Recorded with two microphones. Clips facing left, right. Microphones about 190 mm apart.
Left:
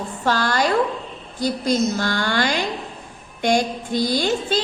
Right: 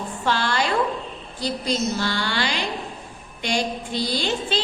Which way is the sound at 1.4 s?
45° left (ahead or behind).